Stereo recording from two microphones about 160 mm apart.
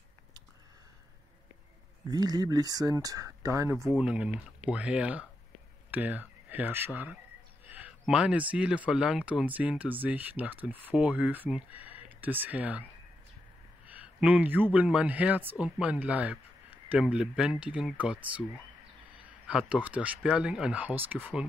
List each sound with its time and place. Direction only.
2.0 s speech: 25° right (ahead or behind)
3.9 s speech: 5° right (ahead or behind)
7.6 s a sound: 10° right (ahead or behind)
8.0 s speech: 5° right (ahead or behind)
13.8 s speech: 10° right (ahead or behind)
19.4 s speech: 10° right (ahead or behind)